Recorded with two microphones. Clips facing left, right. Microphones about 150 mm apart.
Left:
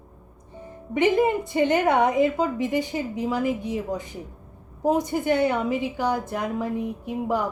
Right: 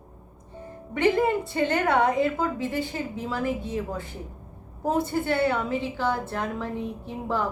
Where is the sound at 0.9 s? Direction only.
15° left (ahead or behind).